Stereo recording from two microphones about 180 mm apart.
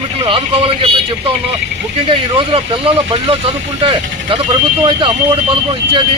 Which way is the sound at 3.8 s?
25° right (ahead or behind).